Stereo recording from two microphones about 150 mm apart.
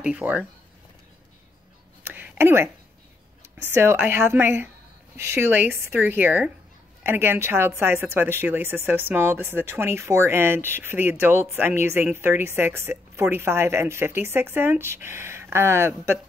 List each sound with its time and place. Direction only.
0.0 s speech: 10° right (ahead or behind)
2.0 s a sound: 15° right (ahead or behind)
3.4 s speech: 15° right (ahead or behind)